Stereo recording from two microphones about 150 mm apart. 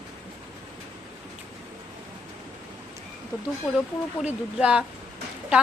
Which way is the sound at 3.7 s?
5° right (ahead or behind).